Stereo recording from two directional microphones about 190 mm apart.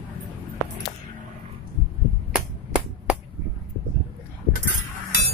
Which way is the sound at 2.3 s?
5° right (ahead or behind).